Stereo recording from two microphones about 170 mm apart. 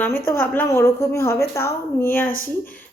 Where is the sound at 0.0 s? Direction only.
15° left (ahead or behind).